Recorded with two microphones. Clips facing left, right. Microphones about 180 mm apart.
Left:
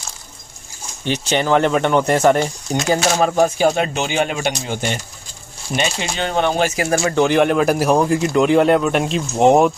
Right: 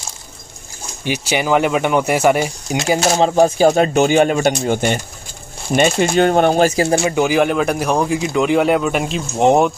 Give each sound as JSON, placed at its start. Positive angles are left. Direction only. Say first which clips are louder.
{"t": 1.0, "sound": "speech", "louder": "even", "side_deg": -10}
{"t": 3.2, "sound": "speech", "louder": "right 3 dB", "side_deg": -25}
{"t": 7.2, "sound": "speech", "louder": "left 3 dB", "side_deg": -5}